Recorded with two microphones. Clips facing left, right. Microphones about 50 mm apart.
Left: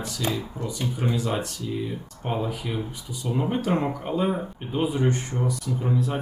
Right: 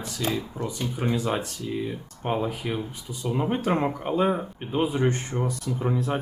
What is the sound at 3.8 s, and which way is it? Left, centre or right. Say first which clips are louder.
Speech: right 2 dB; centre.